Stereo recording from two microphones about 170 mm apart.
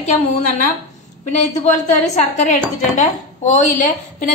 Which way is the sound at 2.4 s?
45° left (ahead or behind).